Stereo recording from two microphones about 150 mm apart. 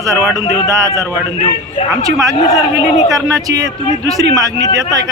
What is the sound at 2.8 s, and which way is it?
Speech, 25° right (ahead or behind).